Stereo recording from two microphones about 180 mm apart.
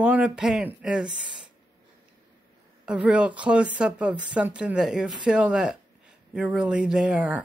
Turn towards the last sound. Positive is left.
turn(degrees=-10)  # may be behind; listen again after turning